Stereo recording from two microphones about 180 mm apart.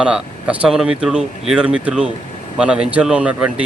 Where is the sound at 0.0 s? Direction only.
5° right (ahead or behind).